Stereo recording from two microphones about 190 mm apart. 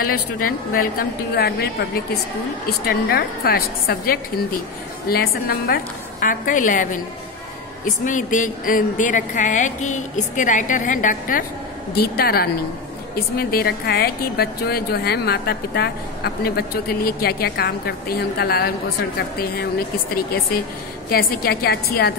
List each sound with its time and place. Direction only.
0.4 s a woman's voice: 50° left (ahead or behind)
2.9 s a woman's voice: 55° left (ahead or behind)
21.1 s a woman's voice: 50° left (ahead or behind)